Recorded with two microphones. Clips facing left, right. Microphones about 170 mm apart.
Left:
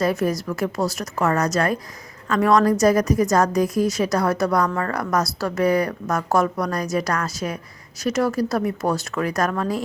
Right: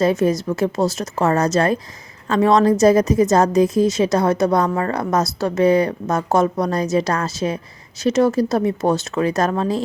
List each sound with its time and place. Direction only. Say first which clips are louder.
0.0 s a woman's voice: right 4 dB; 20° right (ahead or behind)